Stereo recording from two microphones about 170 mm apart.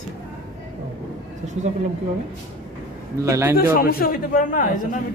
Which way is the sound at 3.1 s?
15° right (ahead or behind).